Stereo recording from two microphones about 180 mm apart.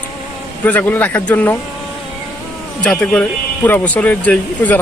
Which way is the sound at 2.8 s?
5° left (ahead or behind).